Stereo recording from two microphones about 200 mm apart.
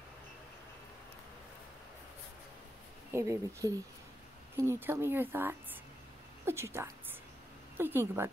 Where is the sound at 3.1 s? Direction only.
15° right (ahead or behind).